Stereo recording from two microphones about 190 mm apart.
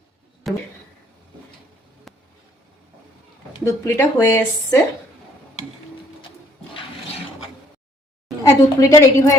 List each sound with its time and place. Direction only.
0.4 s speech: centre (ahead or behind)
3.5 s speech: 15° left (ahead or behind)
8.4 s a woman's voice: 15° left (ahead or behind)